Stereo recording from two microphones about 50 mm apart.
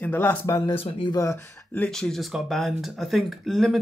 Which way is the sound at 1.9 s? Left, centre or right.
Centre.